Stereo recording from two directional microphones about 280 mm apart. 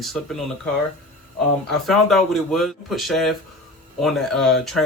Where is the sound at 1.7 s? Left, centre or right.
Centre.